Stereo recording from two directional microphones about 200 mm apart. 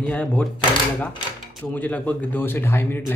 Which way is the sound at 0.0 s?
5° left (ahead or behind).